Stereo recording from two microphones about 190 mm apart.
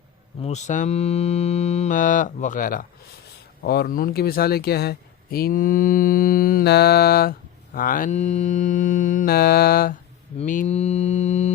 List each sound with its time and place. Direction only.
0.4 s mantra: 35° left (ahead or behind)
3.6 s speech: 55° left (ahead or behind)
10.3 s mantra: 45° left (ahead or behind)